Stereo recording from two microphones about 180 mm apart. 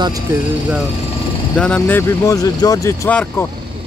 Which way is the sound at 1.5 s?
5° left (ahead or behind).